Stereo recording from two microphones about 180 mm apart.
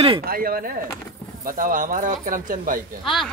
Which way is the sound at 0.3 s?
55° right (ahead or behind).